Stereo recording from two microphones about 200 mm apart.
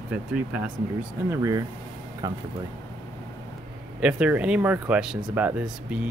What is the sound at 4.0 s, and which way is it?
Speech, 5° right (ahead or behind).